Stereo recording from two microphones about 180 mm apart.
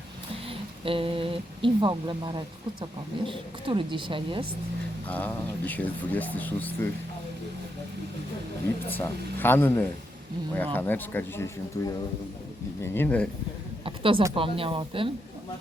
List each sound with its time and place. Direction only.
0.4 s a woman's voice: 30° right (ahead or behind)
5.0 s speech: 10° left (ahead or behind)
8.9 s speech: 10° left (ahead or behind)
13.8 s a sound: 30° right (ahead or behind)
14.3 s a woman's voice: 30° right (ahead or behind)